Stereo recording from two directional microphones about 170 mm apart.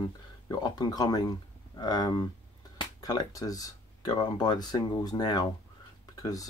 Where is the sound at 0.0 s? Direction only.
25° left (ahead or behind).